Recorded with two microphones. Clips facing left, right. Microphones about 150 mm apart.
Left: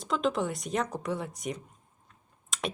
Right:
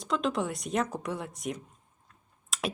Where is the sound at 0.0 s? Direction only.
Centre (ahead or behind).